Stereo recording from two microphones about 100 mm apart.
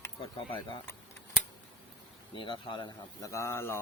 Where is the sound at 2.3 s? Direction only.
55° left (ahead or behind).